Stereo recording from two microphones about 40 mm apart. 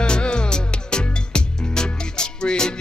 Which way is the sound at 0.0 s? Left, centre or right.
Left.